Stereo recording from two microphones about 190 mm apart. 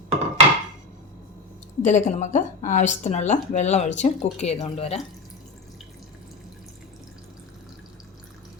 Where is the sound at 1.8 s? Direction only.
40° left (ahead or behind).